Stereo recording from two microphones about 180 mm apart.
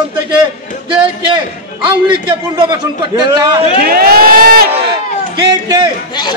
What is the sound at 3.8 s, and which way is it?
Crowd, 55° right (ahead or behind).